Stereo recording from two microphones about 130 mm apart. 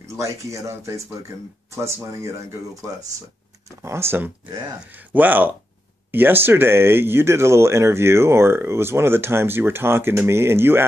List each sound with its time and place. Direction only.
0.1 s speech: 25° right (ahead or behind)
2.1 s speech: 25° right (ahead or behind)
4.5 s speech: 30° right (ahead or behind)
4.8 s speech: 15° right (ahead or behind)